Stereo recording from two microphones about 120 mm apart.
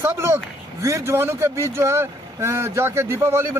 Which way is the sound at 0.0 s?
20° right (ahead or behind).